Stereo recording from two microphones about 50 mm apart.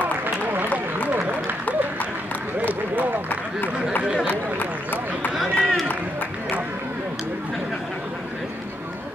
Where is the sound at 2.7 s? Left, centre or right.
Right.